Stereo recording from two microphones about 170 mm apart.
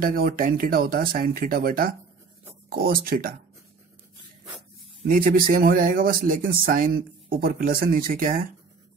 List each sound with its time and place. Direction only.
0.0 s speech: 60° right (ahead or behind)
5.0 s speech: 55° right (ahead or behind)